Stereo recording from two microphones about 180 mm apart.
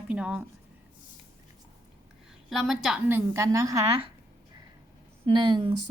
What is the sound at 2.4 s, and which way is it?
A woman's voice, centre (ahead or behind).